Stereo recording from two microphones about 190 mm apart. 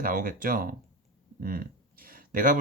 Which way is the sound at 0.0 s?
45° right (ahead or behind).